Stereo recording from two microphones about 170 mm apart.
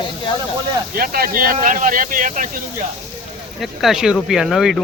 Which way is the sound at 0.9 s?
60° right (ahead or behind).